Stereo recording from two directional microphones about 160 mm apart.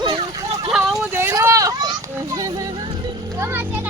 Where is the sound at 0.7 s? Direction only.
Centre (ahead or behind).